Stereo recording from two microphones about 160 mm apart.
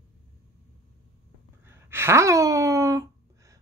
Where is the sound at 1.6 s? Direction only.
15° right (ahead or behind).